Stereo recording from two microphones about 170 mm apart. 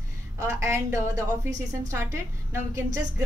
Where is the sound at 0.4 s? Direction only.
15° right (ahead or behind).